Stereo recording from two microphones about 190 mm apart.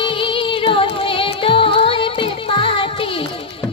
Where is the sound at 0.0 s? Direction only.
25° left (ahead or behind).